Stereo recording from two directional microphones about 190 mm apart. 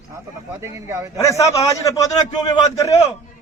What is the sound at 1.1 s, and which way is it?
A man's voice, 15° left (ahead or behind).